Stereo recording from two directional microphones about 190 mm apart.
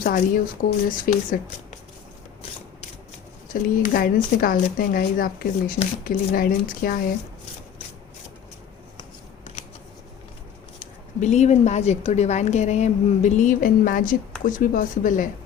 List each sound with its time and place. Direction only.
0.0 s speech: 45° left (ahead or behind)
3.5 s speech: 50° left (ahead or behind)
11.2 s a woman's voice: 40° left (ahead or behind)